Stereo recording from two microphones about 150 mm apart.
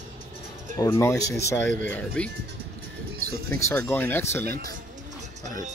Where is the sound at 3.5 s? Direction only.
10° left (ahead or behind).